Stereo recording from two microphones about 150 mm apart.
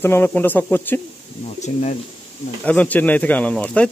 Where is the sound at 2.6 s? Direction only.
10° left (ahead or behind).